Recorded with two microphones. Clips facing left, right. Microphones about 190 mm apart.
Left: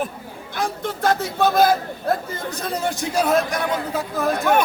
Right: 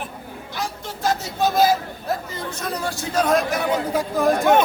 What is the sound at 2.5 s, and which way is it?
Speech, 30° left (ahead or behind).